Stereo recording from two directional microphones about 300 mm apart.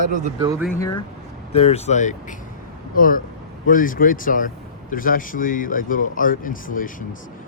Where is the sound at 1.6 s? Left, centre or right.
Left.